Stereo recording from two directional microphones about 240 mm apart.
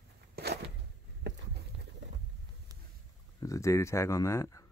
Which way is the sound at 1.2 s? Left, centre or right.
Right.